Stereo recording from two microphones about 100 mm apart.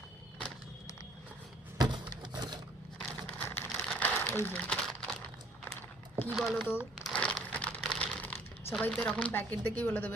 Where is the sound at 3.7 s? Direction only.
5° left (ahead or behind); by 4.6 s 20° left (ahead or behind).